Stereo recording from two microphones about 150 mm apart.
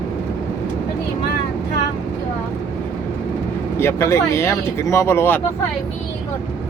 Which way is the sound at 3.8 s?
15° left (ahead or behind).